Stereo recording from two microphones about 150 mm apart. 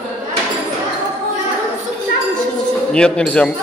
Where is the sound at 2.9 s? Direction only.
5° left (ahead or behind).